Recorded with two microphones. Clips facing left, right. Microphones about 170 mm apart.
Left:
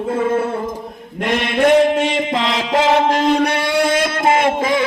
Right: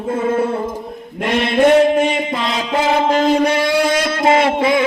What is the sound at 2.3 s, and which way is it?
Music, 90° left.